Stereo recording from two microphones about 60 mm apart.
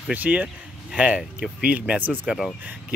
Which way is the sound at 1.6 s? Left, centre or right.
Right.